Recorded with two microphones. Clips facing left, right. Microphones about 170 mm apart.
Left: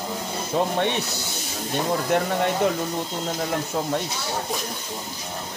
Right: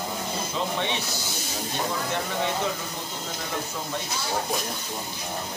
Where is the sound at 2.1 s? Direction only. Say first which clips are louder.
Left 7 dB; 55° left (ahead or behind).